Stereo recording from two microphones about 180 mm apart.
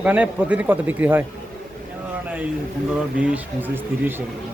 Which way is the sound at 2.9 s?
5° right (ahead or behind).